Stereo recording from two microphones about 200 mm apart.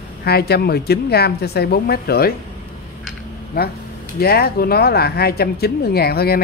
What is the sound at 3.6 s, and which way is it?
Speech, 50° left (ahead or behind).